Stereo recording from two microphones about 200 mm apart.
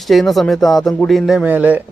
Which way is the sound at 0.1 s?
Centre (ahead or behind).